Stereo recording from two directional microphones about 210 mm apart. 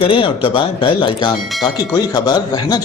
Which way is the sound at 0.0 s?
25° left (ahead or behind).